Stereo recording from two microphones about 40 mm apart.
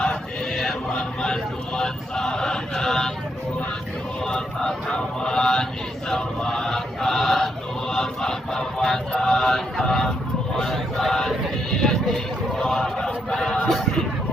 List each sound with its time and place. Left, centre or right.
0.5 s music: centre
0.9 s a sound: left
4.3 s mantra: centre
6.1 s chant: centre
9.1 s a sound: centre
13.7 s music: centre